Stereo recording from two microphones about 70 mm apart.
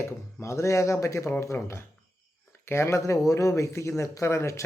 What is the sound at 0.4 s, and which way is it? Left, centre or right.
Speech, left.